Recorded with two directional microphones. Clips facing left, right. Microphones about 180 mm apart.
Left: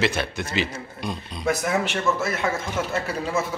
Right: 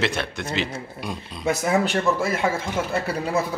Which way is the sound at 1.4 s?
30° right (ahead or behind).